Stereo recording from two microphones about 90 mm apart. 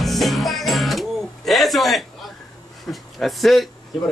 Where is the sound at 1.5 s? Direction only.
Centre (ahead or behind).